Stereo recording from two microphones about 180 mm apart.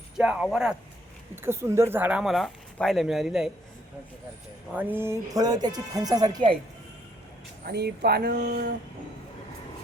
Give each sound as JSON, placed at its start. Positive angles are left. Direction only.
{"t": 0.2, "sound": "speech", "side_deg": -5}
{"t": 1.4, "sound": "speech", "side_deg": -15}
{"t": 4.7, "sound": "speech", "side_deg": -10}
{"t": 7.6, "sound": "speech", "side_deg": -65}